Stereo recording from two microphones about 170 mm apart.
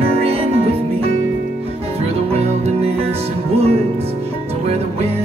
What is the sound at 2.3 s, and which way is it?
Music, 35° right (ahead or behind).